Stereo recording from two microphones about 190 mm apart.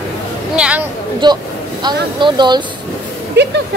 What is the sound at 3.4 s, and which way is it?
Speech, 65° right (ahead or behind).